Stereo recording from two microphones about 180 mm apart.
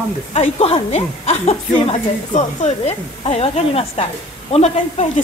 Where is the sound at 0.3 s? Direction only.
35° left (ahead or behind).